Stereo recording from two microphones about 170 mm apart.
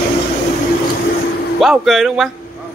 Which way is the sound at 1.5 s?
Centre (ahead or behind).